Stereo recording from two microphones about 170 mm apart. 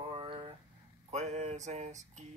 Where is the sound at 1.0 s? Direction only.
40° right (ahead or behind).